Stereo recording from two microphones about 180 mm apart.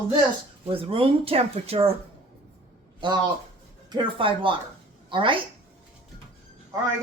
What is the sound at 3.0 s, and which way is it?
A man's voice, 25° right (ahead or behind).